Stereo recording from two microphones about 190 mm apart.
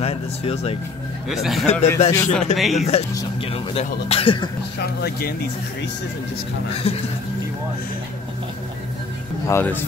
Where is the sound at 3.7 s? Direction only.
30° left (ahead or behind).